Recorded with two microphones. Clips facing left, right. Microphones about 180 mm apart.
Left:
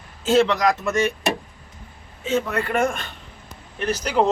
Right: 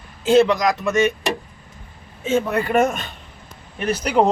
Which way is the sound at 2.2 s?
20° right (ahead or behind).